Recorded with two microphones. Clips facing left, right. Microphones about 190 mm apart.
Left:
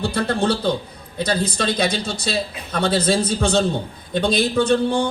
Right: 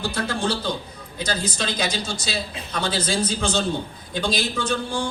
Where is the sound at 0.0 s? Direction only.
60° left (ahead or behind).